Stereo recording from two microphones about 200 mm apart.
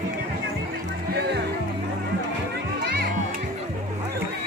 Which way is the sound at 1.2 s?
55° right (ahead or behind).